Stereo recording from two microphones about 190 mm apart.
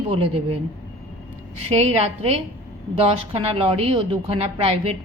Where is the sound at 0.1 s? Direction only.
30° right (ahead or behind).